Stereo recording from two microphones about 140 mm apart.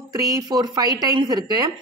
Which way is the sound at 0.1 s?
25° right (ahead or behind).